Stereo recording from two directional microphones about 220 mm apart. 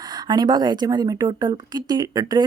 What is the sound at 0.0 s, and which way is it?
A woman's voice, 20° right (ahead or behind).